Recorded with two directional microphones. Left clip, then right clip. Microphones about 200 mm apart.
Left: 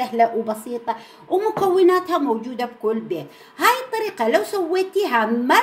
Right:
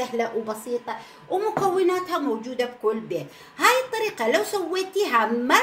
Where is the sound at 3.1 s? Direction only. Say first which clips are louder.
Left 2 dB; 25° left (ahead or behind).